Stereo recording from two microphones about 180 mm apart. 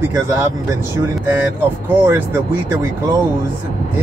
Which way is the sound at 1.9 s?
10° right (ahead or behind).